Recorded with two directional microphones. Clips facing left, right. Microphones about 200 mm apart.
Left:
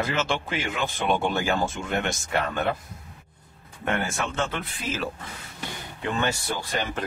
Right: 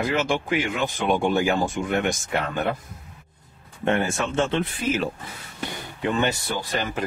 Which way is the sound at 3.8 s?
25° right (ahead or behind).